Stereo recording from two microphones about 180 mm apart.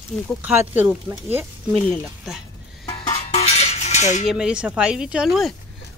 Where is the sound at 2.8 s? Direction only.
30° left (ahead or behind).